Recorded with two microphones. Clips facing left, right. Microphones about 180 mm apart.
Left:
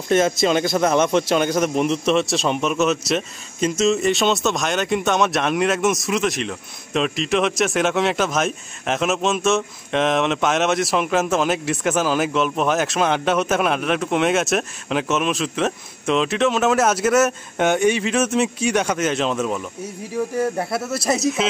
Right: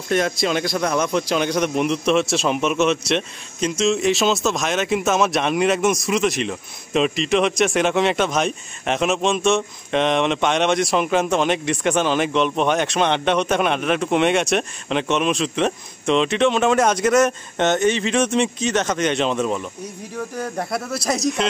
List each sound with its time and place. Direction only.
0.1 s speech: centre (ahead or behind)
0.9 s a man's voice: 25° left (ahead or behind)
1.3 s speech: 5° left (ahead or behind)